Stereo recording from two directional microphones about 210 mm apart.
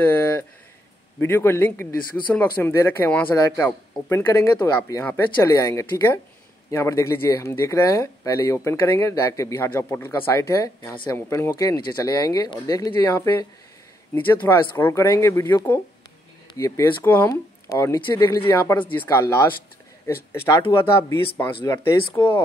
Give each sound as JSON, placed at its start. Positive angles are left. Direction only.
{"t": 0.0, "sound": "speech", "side_deg": 10}